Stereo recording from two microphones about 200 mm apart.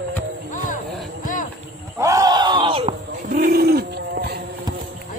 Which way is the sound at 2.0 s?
15° right (ahead or behind).